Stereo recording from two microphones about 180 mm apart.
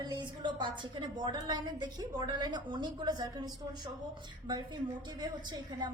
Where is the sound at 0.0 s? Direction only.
25° right (ahead or behind).